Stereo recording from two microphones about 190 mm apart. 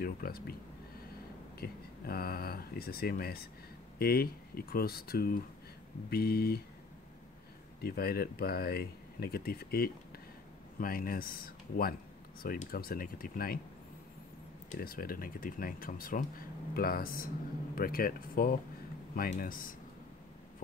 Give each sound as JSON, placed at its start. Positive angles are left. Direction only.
{"t": 0.0, "sound": "speech", "side_deg": 50}
{"t": 1.6, "sound": "speech", "side_deg": 55}
{"t": 6.0, "sound": "mantra", "side_deg": 55}
{"t": 7.8, "sound": "speech", "side_deg": 55}
{"t": 14.7, "sound": "speech", "side_deg": 50}